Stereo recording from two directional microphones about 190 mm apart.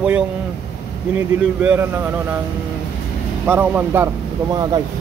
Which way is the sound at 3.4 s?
10° right (ahead or behind).